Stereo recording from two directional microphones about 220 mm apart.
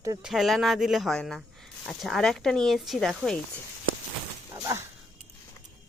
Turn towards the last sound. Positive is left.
turn(degrees=-15)  # may be behind; listen again after turning